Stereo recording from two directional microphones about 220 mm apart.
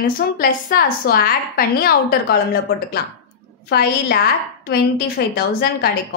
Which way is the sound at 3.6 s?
45° left (ahead or behind).